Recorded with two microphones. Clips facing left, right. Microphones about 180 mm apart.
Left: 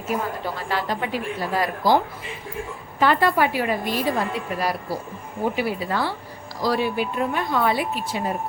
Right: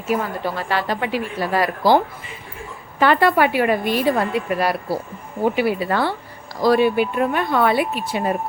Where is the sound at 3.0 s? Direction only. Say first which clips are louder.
Right 3 dB; 70° right (ahead or behind).